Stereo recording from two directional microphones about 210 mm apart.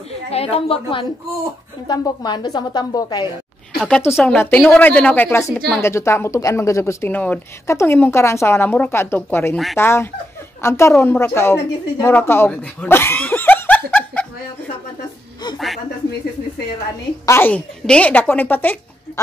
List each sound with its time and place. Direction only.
0.3 s a woman's voice: 30° left (ahead or behind); by 14.2 s 5° left (ahead or behind)
17.3 s speech: 10° left (ahead or behind)